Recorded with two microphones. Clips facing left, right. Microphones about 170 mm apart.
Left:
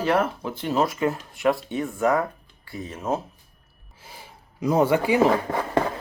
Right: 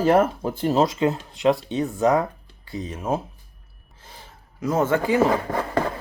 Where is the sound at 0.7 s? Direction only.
20° right (ahead or behind).